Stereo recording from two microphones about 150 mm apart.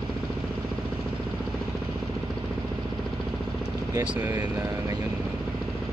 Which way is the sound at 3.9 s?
15° right (ahead or behind).